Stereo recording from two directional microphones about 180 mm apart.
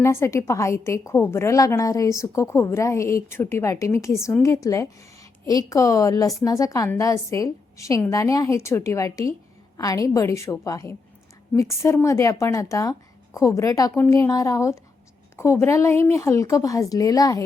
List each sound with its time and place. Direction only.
0.0 s a woman's voice: 15° left (ahead or behind)